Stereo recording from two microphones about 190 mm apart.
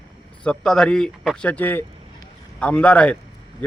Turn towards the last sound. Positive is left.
turn(degrees=5)  # may be behind; listen again after turning